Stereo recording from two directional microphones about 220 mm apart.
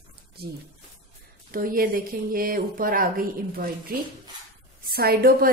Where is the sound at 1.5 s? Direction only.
40° right (ahead or behind).